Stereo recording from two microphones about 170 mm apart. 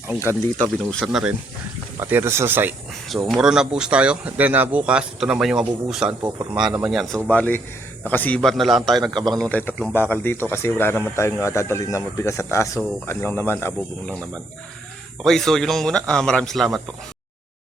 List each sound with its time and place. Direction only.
0.9 s speech: centre (ahead or behind)
3.1 s speech: centre (ahead or behind)
6.2 s speech: 20° right (ahead or behind)
6.9 s a man's voice: centre (ahead or behind)